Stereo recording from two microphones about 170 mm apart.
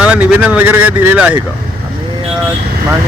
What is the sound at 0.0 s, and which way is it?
Speech, 5° right (ahead or behind).